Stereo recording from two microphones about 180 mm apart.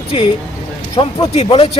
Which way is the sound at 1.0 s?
30° left (ahead or behind).